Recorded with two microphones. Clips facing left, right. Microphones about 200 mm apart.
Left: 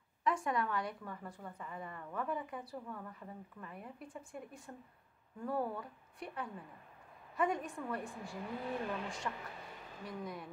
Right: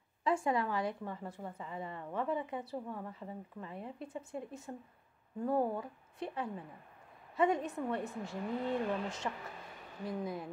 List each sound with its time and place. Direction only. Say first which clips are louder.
0.2 s a woman's voice: right 3 dB; 25° right (ahead or behind)